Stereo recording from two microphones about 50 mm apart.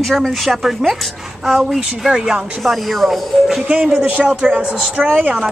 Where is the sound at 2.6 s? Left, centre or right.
Centre.